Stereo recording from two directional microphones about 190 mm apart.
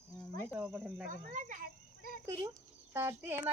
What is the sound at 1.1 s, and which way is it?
Speech, 45° right (ahead or behind).